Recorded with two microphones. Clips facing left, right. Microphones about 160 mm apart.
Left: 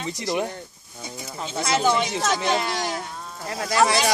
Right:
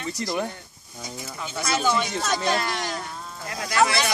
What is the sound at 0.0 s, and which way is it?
Speech, 15° left (ahead or behind).